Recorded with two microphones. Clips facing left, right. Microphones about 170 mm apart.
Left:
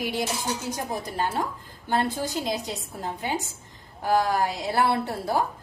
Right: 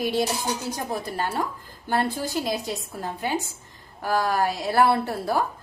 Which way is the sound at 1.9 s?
20° left (ahead or behind).